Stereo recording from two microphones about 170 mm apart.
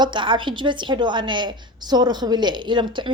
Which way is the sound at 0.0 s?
30° right (ahead or behind).